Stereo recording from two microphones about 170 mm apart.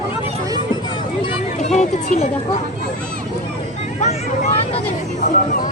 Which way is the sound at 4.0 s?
40° left (ahead or behind).